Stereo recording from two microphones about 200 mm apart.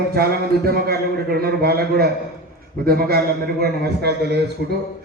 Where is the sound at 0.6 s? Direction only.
50° right (ahead or behind).